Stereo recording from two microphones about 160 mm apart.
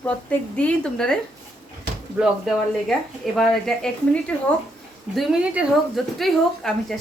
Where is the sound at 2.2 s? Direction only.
Centre (ahead or behind).